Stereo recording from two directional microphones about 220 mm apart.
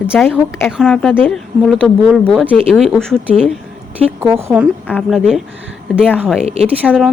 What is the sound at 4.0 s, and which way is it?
Speech, 10° right (ahead or behind).